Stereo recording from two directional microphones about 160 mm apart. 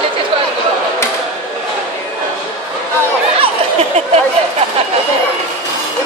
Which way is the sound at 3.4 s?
40° right (ahead or behind).